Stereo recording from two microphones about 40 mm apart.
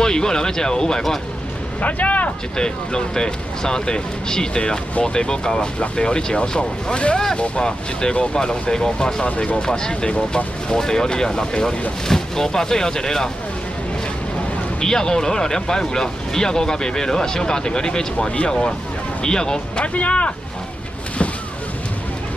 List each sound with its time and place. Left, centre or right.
0.0 s speech: centre
1.8 s speech: left
2.5 s speech: centre
14.8 s speech: centre
19.8 s speech: left